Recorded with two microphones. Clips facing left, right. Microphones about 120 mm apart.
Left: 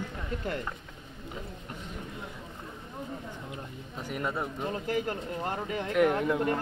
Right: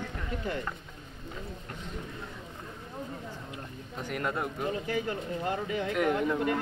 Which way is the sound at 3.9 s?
5° left (ahead or behind).